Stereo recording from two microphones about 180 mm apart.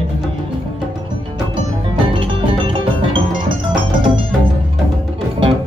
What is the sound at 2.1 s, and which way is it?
Music, 30° right (ahead or behind).